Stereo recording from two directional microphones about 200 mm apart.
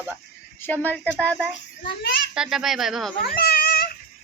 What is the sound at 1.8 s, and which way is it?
Speech, 55° left (ahead or behind).